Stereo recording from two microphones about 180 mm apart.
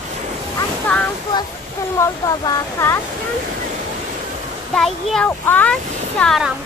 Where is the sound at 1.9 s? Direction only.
15° left (ahead or behind).